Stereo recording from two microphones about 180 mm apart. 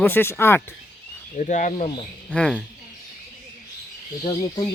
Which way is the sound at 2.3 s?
5° left (ahead or behind).